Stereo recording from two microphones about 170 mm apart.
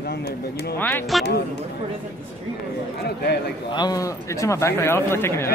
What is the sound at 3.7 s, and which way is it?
Speech, 25° left (ahead or behind).